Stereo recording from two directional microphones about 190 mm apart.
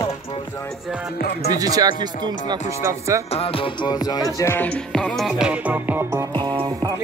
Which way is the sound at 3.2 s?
30° left (ahead or behind).